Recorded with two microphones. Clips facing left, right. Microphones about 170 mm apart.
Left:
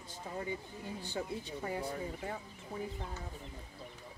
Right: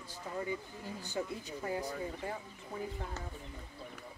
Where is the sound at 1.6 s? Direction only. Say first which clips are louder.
Right 2 dB; 30° left (ahead or behind).